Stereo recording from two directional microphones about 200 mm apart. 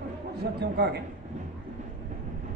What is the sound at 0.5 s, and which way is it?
Speech, 55° right (ahead or behind).